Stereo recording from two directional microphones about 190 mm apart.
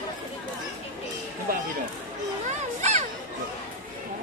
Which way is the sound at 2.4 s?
40° right (ahead or behind).